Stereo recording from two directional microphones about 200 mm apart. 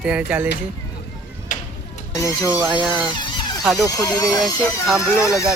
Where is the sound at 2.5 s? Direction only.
10° right (ahead or behind).